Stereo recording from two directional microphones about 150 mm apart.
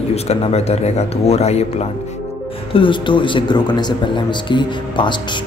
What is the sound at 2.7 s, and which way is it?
Speech, 35° left (ahead or behind).